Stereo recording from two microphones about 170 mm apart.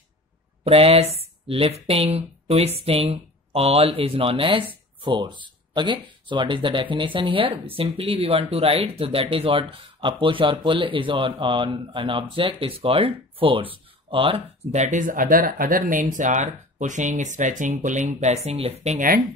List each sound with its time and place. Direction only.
0.7 s speech: 35° right (ahead or behind)
18.9 s speech: 60° right (ahead or behind)